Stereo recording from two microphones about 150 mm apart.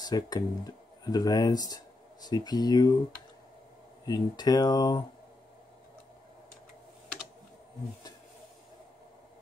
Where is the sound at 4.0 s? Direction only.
25° left (ahead or behind).